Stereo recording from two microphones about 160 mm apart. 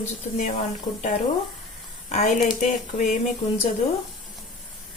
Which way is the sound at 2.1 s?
45° left (ahead or behind).